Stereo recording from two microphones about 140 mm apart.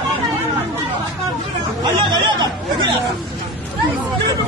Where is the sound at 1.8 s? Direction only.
30° right (ahead or behind).